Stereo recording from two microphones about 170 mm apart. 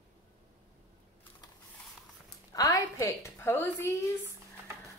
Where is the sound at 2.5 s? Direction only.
20° left (ahead or behind).